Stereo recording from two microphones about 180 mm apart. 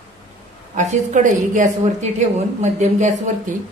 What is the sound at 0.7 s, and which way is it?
Speech, 40° right (ahead or behind).